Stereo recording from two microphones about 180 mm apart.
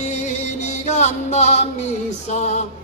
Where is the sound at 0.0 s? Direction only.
40° left (ahead or behind).